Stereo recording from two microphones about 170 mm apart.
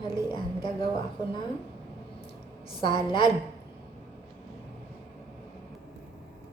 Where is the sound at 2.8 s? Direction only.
30° left (ahead or behind).